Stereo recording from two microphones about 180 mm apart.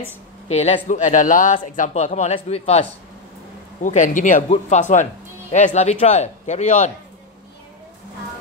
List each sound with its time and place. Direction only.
0.5 s speech: 35° left (ahead or behind)
3.8 s speech: 45° left (ahead or behind)